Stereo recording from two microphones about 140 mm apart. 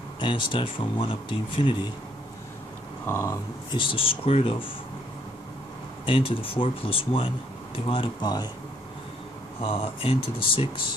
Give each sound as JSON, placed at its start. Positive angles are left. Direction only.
{"t": 0.2, "sound": "speech", "side_deg": 35}
{"t": 3.1, "sound": "speech", "side_deg": 15}
{"t": 3.7, "sound": "speech", "side_deg": 40}
{"t": 6.0, "sound": "speech", "side_deg": 40}
{"t": 9.6, "sound": "speech", "side_deg": 40}